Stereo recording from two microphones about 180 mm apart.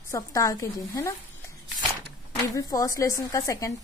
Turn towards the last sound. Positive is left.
turn(degrees=20)  # may be behind; listen again after turning